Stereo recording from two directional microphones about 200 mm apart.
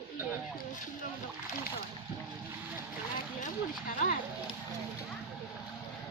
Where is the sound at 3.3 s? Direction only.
40° left (ahead or behind).